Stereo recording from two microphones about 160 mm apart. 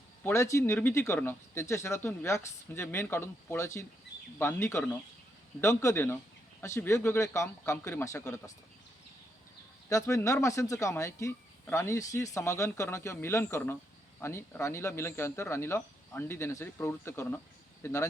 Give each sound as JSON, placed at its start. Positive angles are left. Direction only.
{"t": 0.2, "sound": "speech", "side_deg": 15}
{"t": 9.9, "sound": "speech", "side_deg": 20}